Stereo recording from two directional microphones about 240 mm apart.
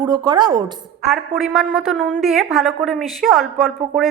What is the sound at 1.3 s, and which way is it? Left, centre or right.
A woman's voice, centre.